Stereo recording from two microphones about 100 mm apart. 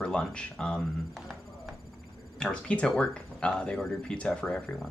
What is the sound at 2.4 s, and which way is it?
Speech, 10° left (ahead or behind).